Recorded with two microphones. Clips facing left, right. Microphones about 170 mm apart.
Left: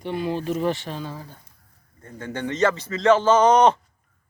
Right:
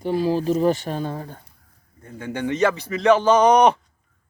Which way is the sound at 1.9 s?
10° right (ahead or behind).